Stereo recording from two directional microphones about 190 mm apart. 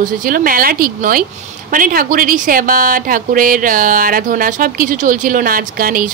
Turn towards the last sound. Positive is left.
turn(degrees=-50)  # may be behind; listen again after turning